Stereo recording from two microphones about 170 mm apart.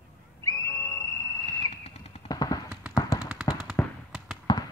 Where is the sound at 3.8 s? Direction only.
10° left (ahead or behind).